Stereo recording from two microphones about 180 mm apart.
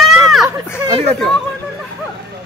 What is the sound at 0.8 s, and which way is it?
Speech, 30° right (ahead or behind).